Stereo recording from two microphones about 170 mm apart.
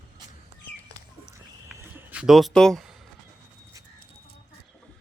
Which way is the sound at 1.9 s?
5° right (ahead or behind).